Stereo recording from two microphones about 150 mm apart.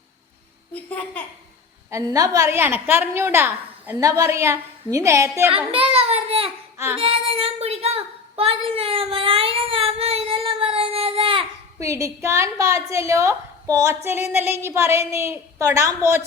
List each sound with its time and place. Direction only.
0.7 s a woman's voice: 10° left (ahead or behind)
1.9 s a woman's voice: 20° right (ahead or behind)
5.7 s a sound: 40° right (ahead or behind)
11.8 s a woman's voice: 20° right (ahead or behind)